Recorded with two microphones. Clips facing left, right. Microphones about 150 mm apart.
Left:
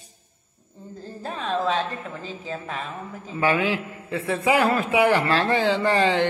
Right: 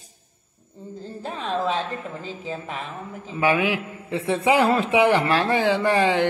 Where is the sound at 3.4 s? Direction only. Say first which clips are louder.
Right 1 dB; 15° right (ahead or behind).